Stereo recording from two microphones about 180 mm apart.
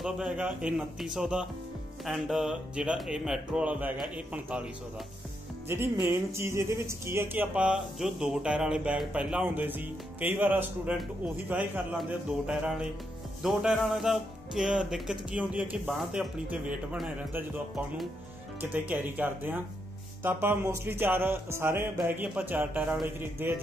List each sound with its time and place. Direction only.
0.0 s speech: 5° right (ahead or behind)
5.7 s speech: 15° right (ahead or behind)